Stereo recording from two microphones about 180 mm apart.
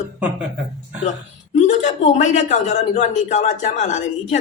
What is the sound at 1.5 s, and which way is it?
Speech, 40° left (ahead or behind).